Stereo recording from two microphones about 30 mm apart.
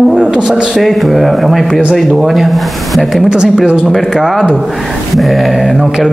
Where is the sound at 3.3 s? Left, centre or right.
Right.